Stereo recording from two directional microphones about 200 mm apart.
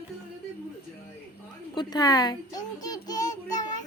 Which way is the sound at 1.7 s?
20° left (ahead or behind).